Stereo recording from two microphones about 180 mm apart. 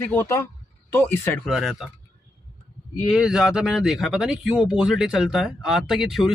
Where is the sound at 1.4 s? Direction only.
Centre (ahead or behind).